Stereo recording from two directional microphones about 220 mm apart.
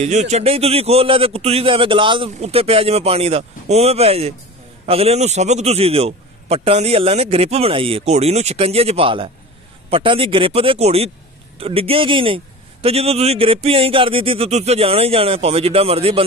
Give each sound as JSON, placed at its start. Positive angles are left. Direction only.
{"t": 0.0, "sound": "a man's voice", "side_deg": -30}